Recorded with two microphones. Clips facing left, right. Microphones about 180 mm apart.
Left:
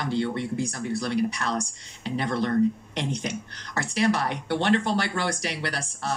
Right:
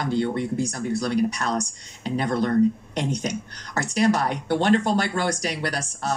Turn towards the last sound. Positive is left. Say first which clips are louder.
# right 3 dB
turn(degrees=-45)  # may be behind; listen again after turning